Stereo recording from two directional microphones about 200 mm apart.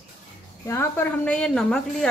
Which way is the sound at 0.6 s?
15° left (ahead or behind).